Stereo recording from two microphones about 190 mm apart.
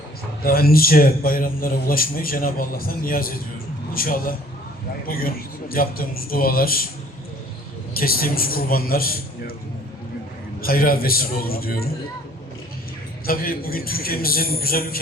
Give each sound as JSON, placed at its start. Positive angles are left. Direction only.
{"t": 0.4, "sound": "a man's voice", "side_deg": 50}
{"t": 7.9, "sound": "a man's voice", "side_deg": 50}
{"t": 10.6, "sound": "a man's voice", "side_deg": 50}
{"t": 13.2, "sound": "a man's voice", "side_deg": 50}